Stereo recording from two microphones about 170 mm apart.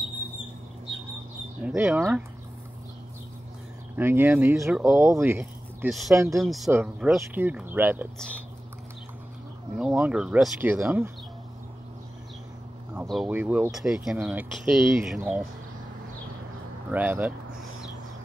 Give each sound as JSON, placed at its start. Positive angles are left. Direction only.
{"t": 1.6, "sound": "speech", "side_deg": -5}
{"t": 3.9, "sound": "speech", "side_deg": -10}
{"t": 5.9, "sound": "speech", "side_deg": 0}
{"t": 6.1, "sound": "speech", "side_deg": -15}
{"t": 6.4, "sound": "speech", "side_deg": 0}
{"t": 9.8, "sound": "speech", "side_deg": -5}
{"t": 13.0, "sound": "speech", "side_deg": 0}
{"t": 13.3, "sound": "speech", "side_deg": -10}
{"t": 16.9, "sound": "speech", "side_deg": -10}